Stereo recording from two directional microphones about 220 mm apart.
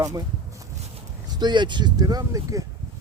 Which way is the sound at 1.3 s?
20° right (ahead or behind).